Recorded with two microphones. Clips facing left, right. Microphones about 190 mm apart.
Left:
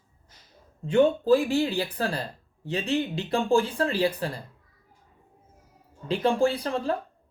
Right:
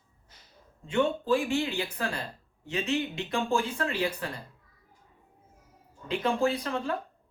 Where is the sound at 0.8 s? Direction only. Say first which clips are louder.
Left 6 dB; 35° left (ahead or behind).